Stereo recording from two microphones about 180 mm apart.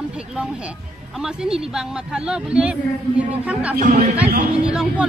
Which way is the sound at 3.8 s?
45° right (ahead or behind).